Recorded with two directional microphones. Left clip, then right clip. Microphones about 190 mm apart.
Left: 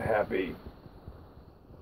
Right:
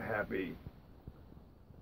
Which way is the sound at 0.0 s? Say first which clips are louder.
Left 9 dB; centre (ahead or behind).